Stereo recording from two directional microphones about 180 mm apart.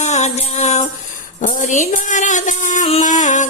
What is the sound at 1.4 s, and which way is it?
A woman's voice, 45° left (ahead or behind).